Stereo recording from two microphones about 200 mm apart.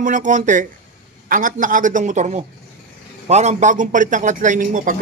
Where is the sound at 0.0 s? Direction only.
40° right (ahead or behind).